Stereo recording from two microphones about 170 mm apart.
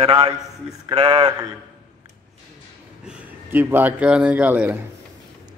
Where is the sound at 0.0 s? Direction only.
35° right (ahead or behind).